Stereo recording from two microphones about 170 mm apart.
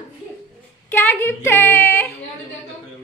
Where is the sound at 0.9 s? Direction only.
10° left (ahead or behind).